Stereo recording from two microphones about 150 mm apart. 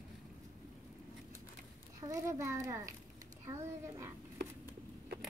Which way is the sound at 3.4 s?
20° right (ahead or behind).